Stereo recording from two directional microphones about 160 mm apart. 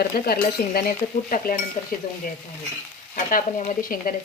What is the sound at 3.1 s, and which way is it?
Stir, 55° left (ahead or behind).